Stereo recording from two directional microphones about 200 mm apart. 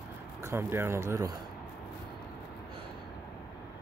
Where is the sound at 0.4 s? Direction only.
10° right (ahead or behind).